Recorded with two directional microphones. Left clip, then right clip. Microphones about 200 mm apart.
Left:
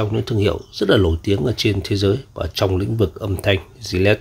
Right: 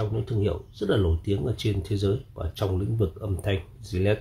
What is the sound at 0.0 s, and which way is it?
Speech, 45° left (ahead or behind).